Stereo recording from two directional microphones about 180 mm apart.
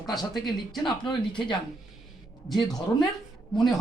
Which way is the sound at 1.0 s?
25° left (ahead or behind).